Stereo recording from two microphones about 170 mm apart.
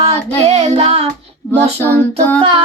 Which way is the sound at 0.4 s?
40° right (ahead or behind).